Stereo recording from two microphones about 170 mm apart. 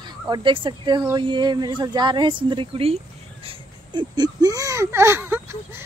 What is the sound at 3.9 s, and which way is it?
Speech, 25° right (ahead or behind).